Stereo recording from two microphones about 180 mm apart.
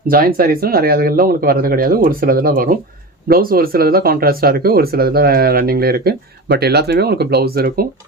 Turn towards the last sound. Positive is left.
turn(degrees=-60)  # may be behind; listen again after turning